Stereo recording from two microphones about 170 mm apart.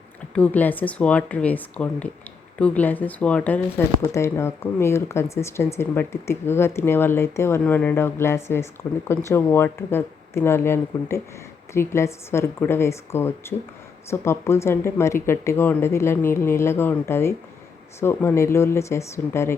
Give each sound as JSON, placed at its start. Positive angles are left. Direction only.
{"t": 0.3, "sound": "speech", "side_deg": 10}